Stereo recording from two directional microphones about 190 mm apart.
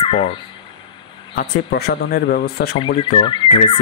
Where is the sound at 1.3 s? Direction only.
60° left (ahead or behind).